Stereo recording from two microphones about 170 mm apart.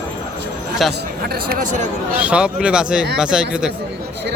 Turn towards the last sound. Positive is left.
turn(degrees=-5)  # may be behind; listen again after turning